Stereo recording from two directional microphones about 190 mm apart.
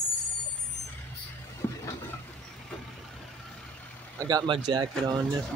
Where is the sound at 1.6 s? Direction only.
10° left (ahead or behind).